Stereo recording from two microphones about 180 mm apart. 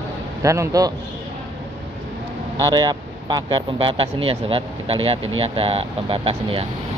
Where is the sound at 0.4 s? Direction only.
15° right (ahead or behind).